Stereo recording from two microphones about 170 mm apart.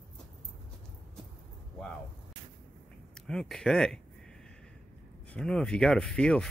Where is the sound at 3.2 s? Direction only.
5° left (ahead or behind).